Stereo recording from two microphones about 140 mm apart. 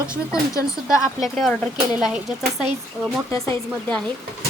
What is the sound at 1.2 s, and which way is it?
Speech, centre (ahead or behind).